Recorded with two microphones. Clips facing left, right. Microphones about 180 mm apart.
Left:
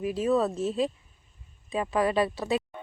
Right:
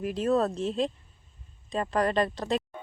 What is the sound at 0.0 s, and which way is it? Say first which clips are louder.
Speech: left 1 dB; 5° left (ahead or behind).